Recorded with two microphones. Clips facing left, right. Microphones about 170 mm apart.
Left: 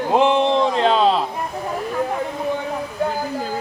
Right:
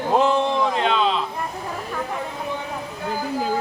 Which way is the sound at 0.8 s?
35° left (ahead or behind).